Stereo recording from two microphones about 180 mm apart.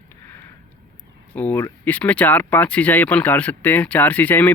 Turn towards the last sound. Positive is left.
turn(degrees=10)  # may be behind; listen again after turning